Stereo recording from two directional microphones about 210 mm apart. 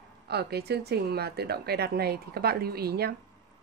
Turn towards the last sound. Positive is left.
turn(degrees=-50)  # may be behind; listen again after turning